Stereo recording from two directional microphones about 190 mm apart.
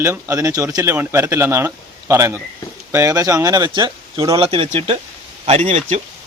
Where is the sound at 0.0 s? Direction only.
15° right (ahead or behind).